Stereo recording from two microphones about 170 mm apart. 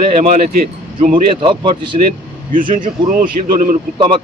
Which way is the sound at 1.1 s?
30° right (ahead or behind).